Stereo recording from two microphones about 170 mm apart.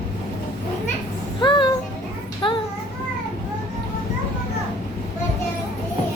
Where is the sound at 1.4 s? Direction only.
30° left (ahead or behind).